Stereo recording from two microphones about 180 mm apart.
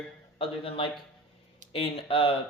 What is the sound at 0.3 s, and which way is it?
A man's voice, 30° left (ahead or behind).